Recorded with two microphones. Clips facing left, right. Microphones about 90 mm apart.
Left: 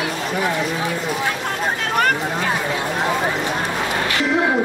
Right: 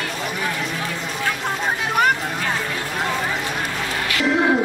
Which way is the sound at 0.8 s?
15° left (ahead or behind).